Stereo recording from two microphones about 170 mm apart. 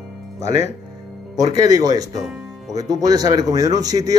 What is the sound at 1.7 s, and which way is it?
Speech, 20° right (ahead or behind).